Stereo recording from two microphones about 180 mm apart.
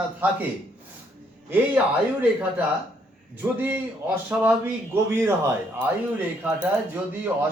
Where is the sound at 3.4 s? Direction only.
10° right (ahead or behind).